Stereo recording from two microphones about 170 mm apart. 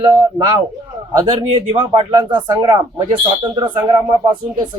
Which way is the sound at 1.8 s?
30° right (ahead or behind).